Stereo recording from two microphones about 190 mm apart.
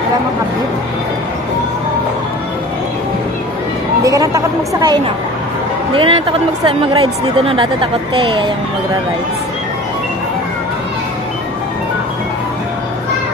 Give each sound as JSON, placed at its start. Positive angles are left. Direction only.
{"t": 4.0, "sound": "speech", "side_deg": -15}